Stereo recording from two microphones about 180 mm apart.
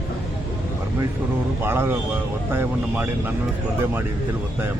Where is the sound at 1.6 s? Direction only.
10° right (ahead or behind).